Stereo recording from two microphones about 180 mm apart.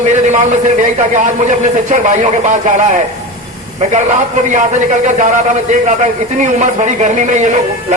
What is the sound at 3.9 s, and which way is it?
A man's voice, 40° right (ahead or behind).